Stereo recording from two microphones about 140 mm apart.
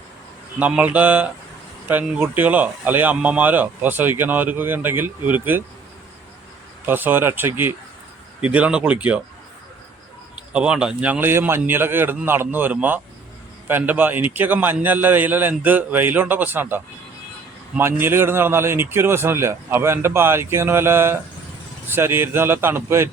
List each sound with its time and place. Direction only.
0.6 s speech: 10° right (ahead or behind)
6.8 s speech: 15° right (ahead or behind)
10.5 s speech: 5° right (ahead or behind)